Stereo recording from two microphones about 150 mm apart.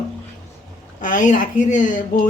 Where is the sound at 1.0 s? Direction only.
60° left (ahead or behind).